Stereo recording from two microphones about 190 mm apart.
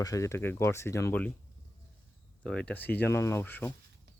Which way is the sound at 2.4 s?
5° left (ahead or behind).